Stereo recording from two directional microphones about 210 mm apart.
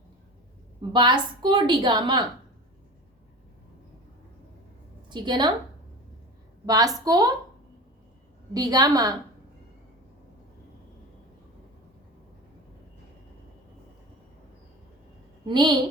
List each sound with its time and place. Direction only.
0.8 s a woman's voice: 20° right (ahead or behind)
5.0 s a woman's voice: 20° right (ahead or behind)
6.7 s a woman's voice: 15° right (ahead or behind)
8.5 s a woman's voice: 15° right (ahead or behind)
15.4 s a woman's voice: 20° right (ahead or behind)